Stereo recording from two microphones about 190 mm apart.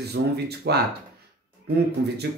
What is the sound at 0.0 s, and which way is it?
Speech, 60° right (ahead or behind).